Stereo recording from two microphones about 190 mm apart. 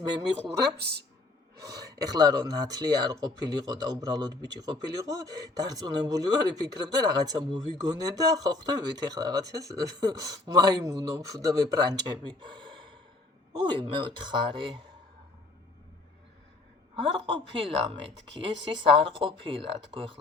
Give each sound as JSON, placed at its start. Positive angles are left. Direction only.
{"t": 0.0, "sound": "speech", "side_deg": -25}
{"t": 0.8, "sound": "speech", "side_deg": -60}
{"t": 1.6, "sound": "speech", "side_deg": -20}
{"t": 16.9, "sound": "speech", "side_deg": -25}